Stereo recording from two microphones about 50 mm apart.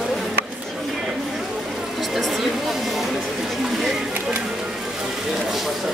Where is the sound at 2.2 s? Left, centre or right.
Centre.